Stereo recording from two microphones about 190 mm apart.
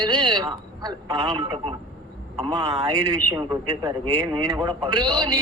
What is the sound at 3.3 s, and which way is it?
A man's voice, 20° right (ahead or behind).